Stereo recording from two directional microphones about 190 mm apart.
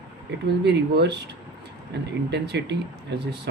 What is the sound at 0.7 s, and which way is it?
Speech, 60° right (ahead or behind).